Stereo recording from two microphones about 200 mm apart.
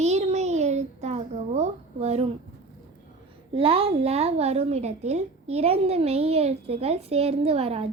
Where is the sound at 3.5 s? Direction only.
30° right (ahead or behind).